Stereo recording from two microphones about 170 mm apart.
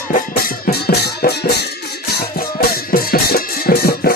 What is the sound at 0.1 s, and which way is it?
Music, 60° left (ahead or behind).